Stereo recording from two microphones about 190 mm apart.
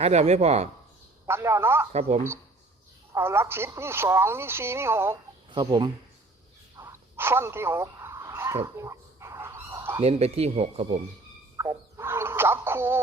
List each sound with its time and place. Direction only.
0.0 s speech: 35° right (ahead or behind)
1.3 s speech: 15° right (ahead or behind)
1.9 s speech: 35° right (ahead or behind)
3.2 s speech: 10° right (ahead or behind)
5.5 s speech: 25° right (ahead or behind)
6.7 s dog: 15° right (ahead or behind)
10.0 s speech: 35° right (ahead or behind)
11.5 s frog: 15° right (ahead or behind)